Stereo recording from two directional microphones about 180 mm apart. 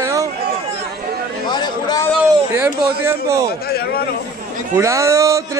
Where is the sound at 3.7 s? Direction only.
60° left (ahead or behind).